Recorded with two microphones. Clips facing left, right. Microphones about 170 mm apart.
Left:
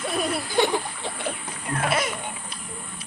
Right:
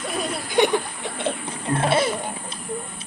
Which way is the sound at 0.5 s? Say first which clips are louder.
Right 5 dB; 20° right (ahead or behind).